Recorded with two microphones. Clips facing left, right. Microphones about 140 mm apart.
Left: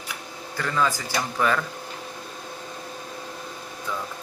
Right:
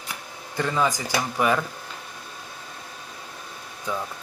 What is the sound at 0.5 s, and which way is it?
Speech, 20° right (ahead or behind).